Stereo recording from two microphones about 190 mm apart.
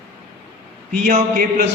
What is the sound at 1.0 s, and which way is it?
Speech, 45° right (ahead or behind).